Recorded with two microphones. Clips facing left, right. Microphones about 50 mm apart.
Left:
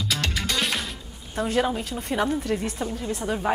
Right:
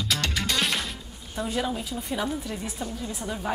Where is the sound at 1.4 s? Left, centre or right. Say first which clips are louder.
Left 4 dB; left.